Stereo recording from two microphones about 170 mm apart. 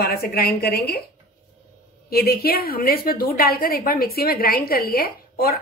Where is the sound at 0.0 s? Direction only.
60° left (ahead or behind).